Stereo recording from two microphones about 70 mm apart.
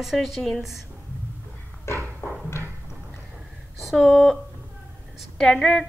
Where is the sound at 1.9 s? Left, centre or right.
Left.